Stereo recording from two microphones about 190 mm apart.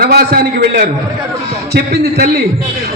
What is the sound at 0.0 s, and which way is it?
A man's voice, 50° right (ahead or behind).